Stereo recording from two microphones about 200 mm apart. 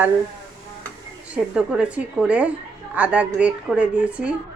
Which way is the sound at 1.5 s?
5° right (ahead or behind).